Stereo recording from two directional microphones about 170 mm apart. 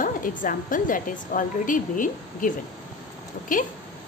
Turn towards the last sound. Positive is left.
turn(degrees=50)  # may be behind; listen again after turning